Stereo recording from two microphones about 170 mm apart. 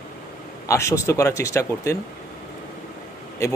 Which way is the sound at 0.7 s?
15° left (ahead or behind).